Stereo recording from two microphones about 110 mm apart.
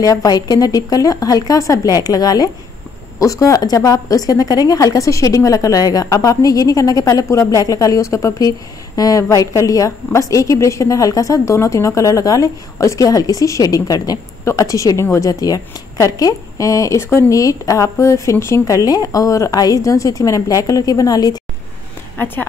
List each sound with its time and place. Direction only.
0.0 s a woman's voice: 30° left (ahead or behind)
22.1 s speech: 20° left (ahead or behind)